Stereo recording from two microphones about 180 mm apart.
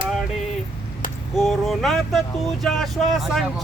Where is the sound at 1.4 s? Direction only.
Centre (ahead or behind).